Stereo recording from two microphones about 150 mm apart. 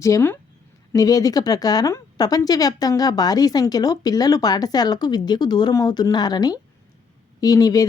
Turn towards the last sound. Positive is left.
turn(degrees=25)  # may be behind; listen again after turning